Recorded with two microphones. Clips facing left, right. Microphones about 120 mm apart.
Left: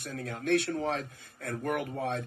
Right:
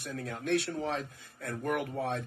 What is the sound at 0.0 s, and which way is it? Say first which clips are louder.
A man's voice: left 1 dB; 45° left (ahead or behind).